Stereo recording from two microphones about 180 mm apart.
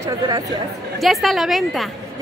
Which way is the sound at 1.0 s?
Centre (ahead or behind).